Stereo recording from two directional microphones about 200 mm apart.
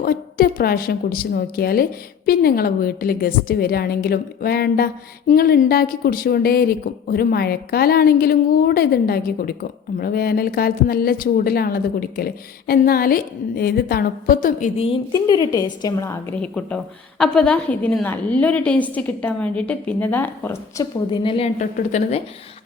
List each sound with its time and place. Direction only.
0.0 s a woman's voice: 50° left (ahead or behind)
15.5 s a woman's voice: 20° left (ahead or behind); by 22.2 s 40° left (ahead or behind)